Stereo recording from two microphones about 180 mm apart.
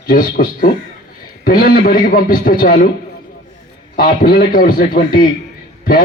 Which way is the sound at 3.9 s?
50° left (ahead or behind).